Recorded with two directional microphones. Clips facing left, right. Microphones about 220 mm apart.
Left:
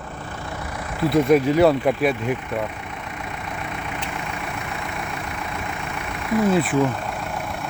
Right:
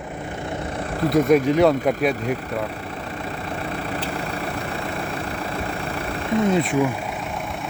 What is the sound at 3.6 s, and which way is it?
Vehicle, 35° right (ahead or behind).